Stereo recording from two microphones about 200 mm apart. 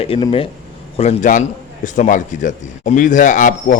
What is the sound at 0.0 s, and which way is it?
A man's voice, 30° left (ahead or behind).